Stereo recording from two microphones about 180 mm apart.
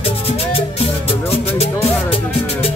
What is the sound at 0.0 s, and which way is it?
Music, 35° left (ahead or behind).